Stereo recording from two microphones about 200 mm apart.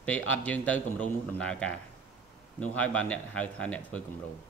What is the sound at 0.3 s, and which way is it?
A man's voice, 5° left (ahead or behind).